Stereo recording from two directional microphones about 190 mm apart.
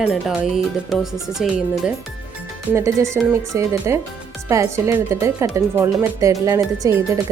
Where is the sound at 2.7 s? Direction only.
15° right (ahead or behind).